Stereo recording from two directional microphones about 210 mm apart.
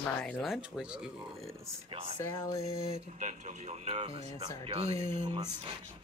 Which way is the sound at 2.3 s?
15° left (ahead or behind).